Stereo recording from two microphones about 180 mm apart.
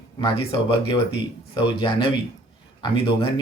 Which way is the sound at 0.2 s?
30° left (ahead or behind).